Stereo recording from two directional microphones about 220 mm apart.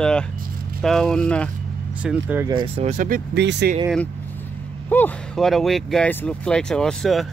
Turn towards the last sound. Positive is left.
turn(degrees=0)  # may be behind; listen again after turning